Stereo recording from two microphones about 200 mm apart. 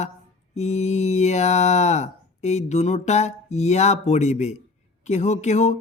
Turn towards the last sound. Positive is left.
turn(degrees=35)  # may be behind; listen again after turning